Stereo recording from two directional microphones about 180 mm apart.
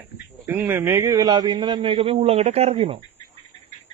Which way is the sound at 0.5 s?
10° right (ahead or behind).